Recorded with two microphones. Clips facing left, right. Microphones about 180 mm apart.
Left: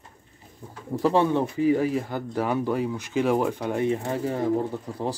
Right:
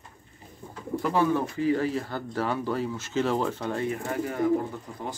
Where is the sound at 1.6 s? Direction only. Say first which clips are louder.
Left 3 dB; 10° left (ahead or behind); by 5.1 s 30° left (ahead or behind).